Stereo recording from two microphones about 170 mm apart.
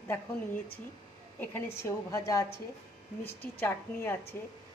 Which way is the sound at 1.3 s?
15° left (ahead or behind).